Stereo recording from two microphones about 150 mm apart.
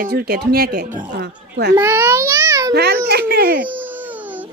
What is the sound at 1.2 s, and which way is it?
Speech, 90° right.